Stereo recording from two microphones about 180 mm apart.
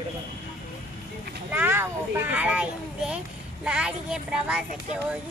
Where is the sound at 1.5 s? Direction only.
10° right (ahead or behind).